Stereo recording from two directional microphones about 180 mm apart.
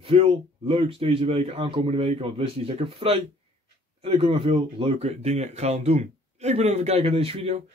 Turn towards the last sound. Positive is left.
turn(degrees=-35)  # may be behind; listen again after turning